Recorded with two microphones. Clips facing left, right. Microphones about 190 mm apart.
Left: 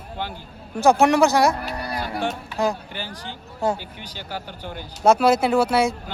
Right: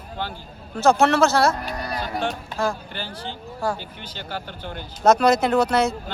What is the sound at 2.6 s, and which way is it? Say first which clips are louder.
Speech: left 2 dB; 15° left (ahead or behind).